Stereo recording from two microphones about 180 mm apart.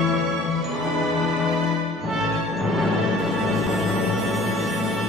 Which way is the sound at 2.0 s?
Centre (ahead or behind).